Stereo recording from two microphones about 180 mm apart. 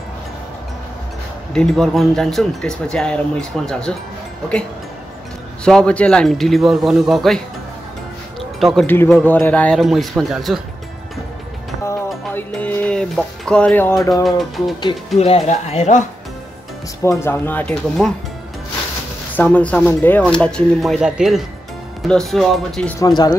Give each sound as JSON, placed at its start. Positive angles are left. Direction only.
{"t": 1.5, "sound": "speech", "side_deg": 5}
{"t": 5.6, "sound": "speech", "side_deg": 5}
{"t": 8.5, "sound": "speech", "side_deg": 0}
{"t": 8.8, "sound": "music", "side_deg": 10}
{"t": 9.1, "sound": "speech", "side_deg": 10}
{"t": 12.4, "sound": "music", "side_deg": 10}
{"t": 15.1, "sound": "speech", "side_deg": 35}
{"t": 17.0, "sound": "music", "side_deg": 15}
{"t": 19.3, "sound": "speech", "side_deg": 10}
{"t": 22.9, "sound": "speech", "side_deg": 20}